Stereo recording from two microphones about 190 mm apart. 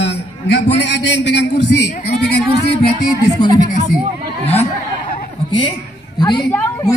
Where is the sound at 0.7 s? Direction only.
70° left (ahead or behind).